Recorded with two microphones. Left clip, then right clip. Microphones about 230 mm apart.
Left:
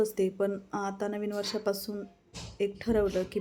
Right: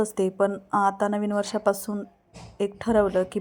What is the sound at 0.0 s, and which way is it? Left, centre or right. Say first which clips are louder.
Speech: right 5 dB; centre.